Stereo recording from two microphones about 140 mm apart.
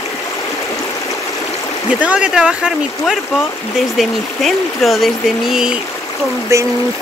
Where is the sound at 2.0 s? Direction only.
10° right (ahead or behind).